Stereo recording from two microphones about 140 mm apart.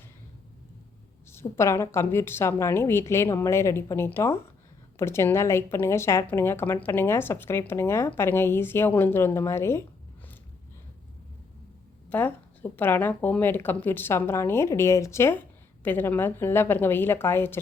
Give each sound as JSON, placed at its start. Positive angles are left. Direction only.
{"t": 1.3, "sound": "a woman's voice", "side_deg": 20}
{"t": 12.0, "sound": "a woman's voice", "side_deg": 10}